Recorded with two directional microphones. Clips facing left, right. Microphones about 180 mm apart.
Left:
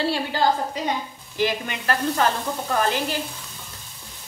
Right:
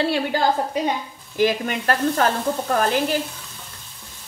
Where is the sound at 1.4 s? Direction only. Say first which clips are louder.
Right 4 dB; 45° right (ahead or behind).